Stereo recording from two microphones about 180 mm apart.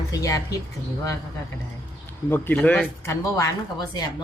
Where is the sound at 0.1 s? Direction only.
20° left (ahead or behind).